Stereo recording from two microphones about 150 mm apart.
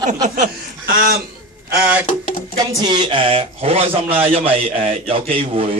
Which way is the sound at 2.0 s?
55° left (ahead or behind).